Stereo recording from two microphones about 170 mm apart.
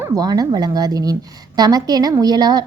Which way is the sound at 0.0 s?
20° right (ahead or behind).